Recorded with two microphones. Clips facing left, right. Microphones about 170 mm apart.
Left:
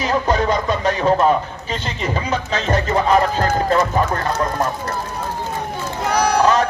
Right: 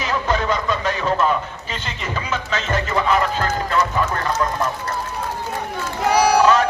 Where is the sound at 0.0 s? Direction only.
40° left (ahead or behind).